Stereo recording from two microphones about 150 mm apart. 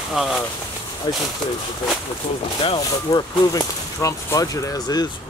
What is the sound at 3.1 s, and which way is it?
Speech, 25° left (ahead or behind).